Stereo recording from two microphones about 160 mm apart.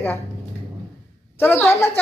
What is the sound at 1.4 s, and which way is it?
Speech, 15° left (ahead or behind).